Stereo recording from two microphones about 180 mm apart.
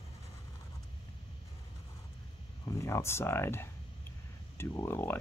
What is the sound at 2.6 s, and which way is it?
Speech, 15° left (ahead or behind).